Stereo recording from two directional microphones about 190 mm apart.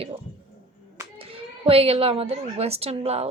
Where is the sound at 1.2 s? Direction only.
30° right (ahead or behind).